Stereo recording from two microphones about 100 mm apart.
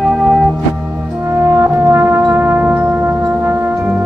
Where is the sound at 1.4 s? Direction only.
30° right (ahead or behind).